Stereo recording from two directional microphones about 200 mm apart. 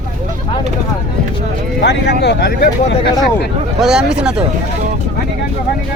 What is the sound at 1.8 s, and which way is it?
Speech, 55° left (ahead or behind).